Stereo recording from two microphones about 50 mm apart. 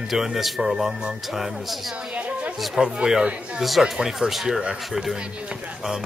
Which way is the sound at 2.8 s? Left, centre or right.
Centre.